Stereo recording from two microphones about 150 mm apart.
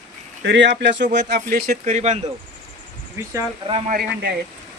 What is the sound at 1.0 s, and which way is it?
Speech, 80° right.